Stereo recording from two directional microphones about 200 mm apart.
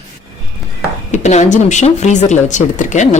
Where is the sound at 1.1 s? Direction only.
35° left (ahead or behind).